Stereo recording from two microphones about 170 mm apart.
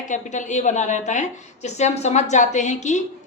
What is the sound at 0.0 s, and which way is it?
A woman's voice, 45° left (ahead or behind).